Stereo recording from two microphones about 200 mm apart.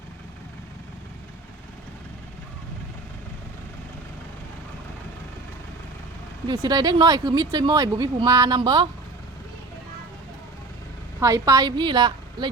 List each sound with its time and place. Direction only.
6.5 s speech: 20° right (ahead or behind)
11.2 s speech: 15° right (ahead or behind)